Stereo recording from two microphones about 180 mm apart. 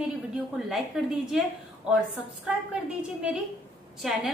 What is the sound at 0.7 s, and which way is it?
Speech, 5° right (ahead or behind).